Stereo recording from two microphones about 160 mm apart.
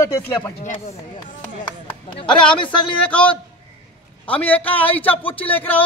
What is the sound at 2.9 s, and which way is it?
Speech, 5° left (ahead or behind).